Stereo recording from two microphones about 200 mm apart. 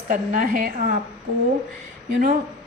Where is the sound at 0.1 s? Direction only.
40° right (ahead or behind).